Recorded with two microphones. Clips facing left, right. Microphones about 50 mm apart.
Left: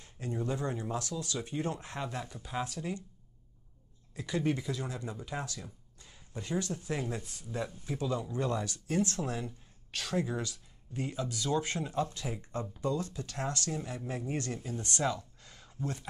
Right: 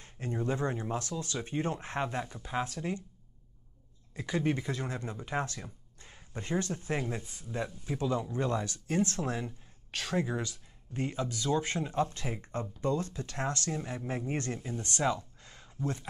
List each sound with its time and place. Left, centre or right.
0.0 s speech: right
4.2 s speech: centre
4.5 s speech: right
7.2 s speech: centre
7.8 s speech: right
15.0 s gasp: right